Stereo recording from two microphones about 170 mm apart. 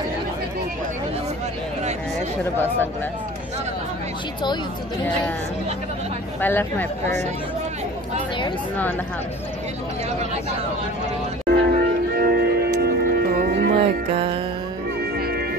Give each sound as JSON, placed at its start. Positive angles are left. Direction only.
{"t": 6.4, "sound": "speech", "side_deg": 10}
{"t": 11.4, "sound": "music", "side_deg": -65}
{"t": 13.7, "sound": "music", "side_deg": -35}
{"t": 15.1, "sound": "music", "side_deg": -65}